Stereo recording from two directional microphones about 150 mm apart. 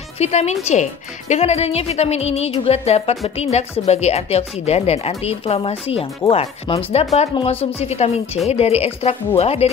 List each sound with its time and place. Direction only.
0.2 s speech: 45° left (ahead or behind)